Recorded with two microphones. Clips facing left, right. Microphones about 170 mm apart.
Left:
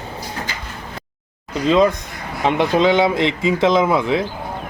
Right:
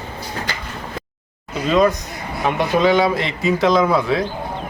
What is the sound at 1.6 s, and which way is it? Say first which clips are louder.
Speech: left 1 dB; 20° left (ahead or behind).